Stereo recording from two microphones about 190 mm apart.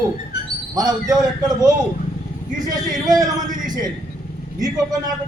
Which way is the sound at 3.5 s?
45° right (ahead or behind).